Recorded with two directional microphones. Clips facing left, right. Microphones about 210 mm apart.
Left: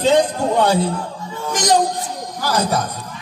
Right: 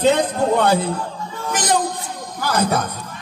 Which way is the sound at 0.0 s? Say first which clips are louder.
Left 1 dB; 55° right (ahead or behind).